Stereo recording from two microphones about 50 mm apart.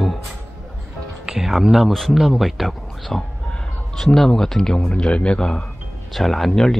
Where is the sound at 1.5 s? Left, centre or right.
Centre.